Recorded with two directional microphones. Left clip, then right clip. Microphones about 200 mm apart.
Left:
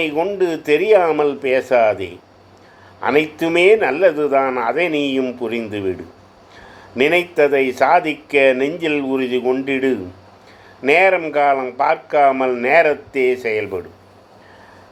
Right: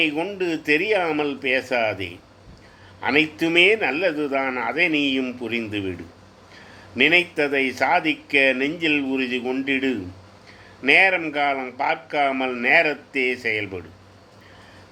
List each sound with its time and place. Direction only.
0.0 s a man's voice: 15° left (ahead or behind)
3.0 s a man's voice: 15° left (ahead or behind)